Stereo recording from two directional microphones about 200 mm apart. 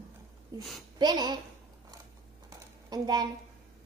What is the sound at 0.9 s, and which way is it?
Speech, 20° right (ahead or behind).